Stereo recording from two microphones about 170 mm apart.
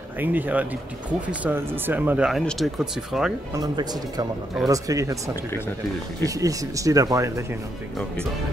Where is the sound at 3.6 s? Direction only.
20° right (ahead or behind).